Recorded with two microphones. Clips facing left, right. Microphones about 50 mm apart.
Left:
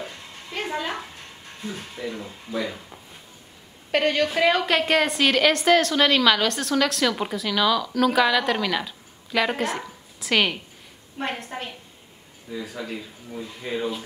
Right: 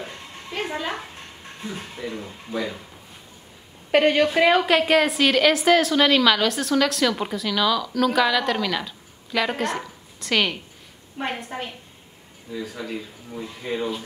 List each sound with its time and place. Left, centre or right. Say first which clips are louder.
0.5 s a sound: even; centre
1.7 s speech: even; centre
2.0 s a woman's voice: even; centre
3.9 s a woman's voice: right 4 dB; centre